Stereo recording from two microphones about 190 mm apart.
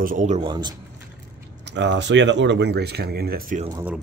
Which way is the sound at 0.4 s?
25° right (ahead or behind).